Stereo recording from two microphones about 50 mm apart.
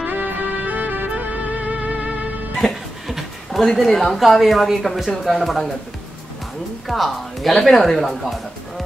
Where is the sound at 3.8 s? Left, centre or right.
Centre.